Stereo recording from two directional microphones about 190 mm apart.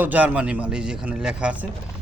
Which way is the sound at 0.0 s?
10° right (ahead or behind).